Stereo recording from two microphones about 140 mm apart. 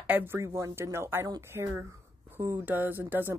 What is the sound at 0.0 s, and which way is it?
Speech, 15° right (ahead or behind).